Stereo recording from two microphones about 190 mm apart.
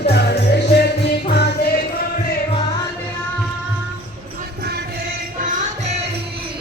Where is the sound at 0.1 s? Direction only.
60° left (ahead or behind).